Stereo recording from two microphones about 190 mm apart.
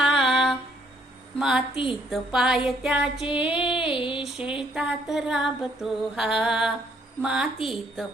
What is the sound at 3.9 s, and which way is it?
Music, 25° left (ahead or behind).